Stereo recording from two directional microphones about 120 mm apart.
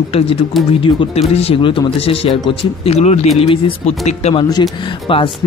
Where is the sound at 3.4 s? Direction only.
50° left (ahead or behind).